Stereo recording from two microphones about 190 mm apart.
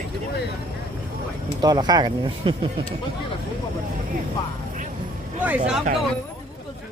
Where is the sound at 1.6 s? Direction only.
20° right (ahead or behind).